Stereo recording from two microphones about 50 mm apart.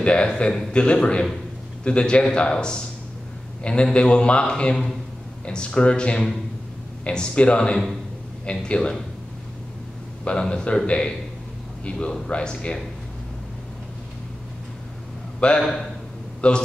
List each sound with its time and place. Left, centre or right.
0.0 s a man's voice: left
10.2 s a man's voice: centre
12.3 s a man's voice: centre
15.6 s a man's voice: centre
16.3 s a man's voice: centre